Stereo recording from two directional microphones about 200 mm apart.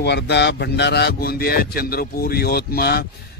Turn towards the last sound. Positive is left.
turn(degrees=50)  # may be behind; listen again after turning